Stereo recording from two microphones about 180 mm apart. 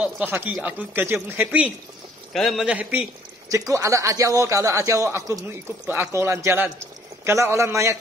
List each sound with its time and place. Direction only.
0.0 s a man's voice: 10° right (ahead or behind)